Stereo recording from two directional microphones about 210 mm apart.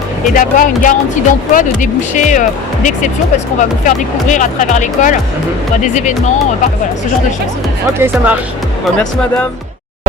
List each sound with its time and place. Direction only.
0.3 s speech: 40° left (ahead or behind)
7.9 s speech: 10° right (ahead or behind)